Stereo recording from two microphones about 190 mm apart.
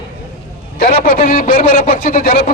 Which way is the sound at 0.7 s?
50° left (ahead or behind).